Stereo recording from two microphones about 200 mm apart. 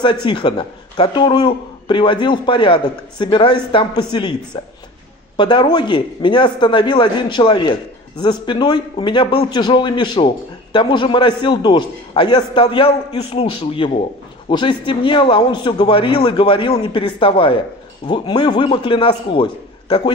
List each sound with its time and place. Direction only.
0.0 s a man's voice: 20° left (ahead or behind)
5.4 s a man's voice: 20° left (ahead or behind)